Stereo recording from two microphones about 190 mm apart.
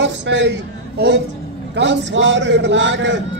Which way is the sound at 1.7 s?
70° right (ahead or behind).